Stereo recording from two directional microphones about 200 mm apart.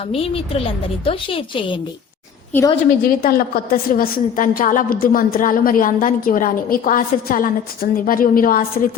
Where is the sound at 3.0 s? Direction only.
45° left (ahead or behind).